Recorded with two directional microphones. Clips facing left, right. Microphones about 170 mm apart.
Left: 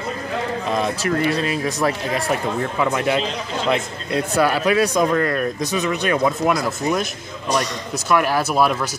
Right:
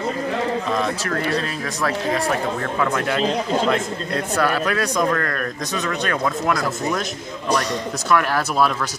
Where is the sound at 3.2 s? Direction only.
45° right (ahead or behind).